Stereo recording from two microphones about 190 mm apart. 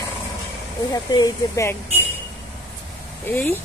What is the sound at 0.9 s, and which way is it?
Speech, 15° left (ahead or behind).